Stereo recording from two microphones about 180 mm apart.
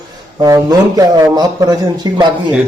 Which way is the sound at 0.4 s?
20° right (ahead or behind).